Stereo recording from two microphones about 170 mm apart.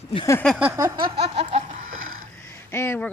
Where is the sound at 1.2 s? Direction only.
40° right (ahead or behind).